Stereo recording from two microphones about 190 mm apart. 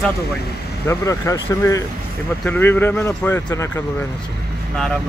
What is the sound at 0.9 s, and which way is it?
Speech, 15° left (ahead or behind).